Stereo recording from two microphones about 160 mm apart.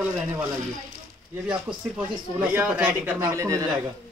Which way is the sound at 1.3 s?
10° right (ahead or behind).